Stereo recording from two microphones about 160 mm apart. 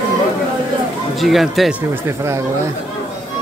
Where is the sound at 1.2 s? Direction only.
Centre (ahead or behind).